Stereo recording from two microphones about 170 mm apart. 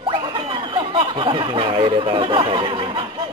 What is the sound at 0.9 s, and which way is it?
Speech, 30° right (ahead or behind).